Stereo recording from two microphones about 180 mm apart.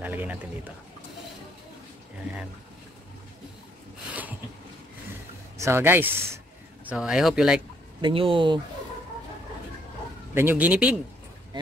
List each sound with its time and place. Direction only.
0.0 s speech: 10° right (ahead or behind)
5.6 s speech: 15° right (ahead or behind)
6.9 s speech: 5° right (ahead or behind)
8.0 s speech: 30° right (ahead or behind)
10.3 s speech: 10° right (ahead or behind)